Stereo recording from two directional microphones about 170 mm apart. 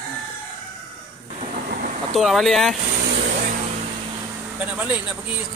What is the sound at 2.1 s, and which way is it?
Speech, centre (ahead or behind).